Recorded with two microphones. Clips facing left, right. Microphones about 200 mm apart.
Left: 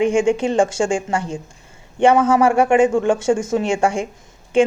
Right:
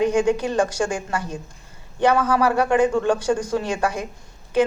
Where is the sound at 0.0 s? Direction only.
25° left (ahead or behind).